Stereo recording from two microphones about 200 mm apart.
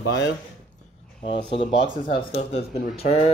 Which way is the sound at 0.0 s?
60° left (ahead or behind).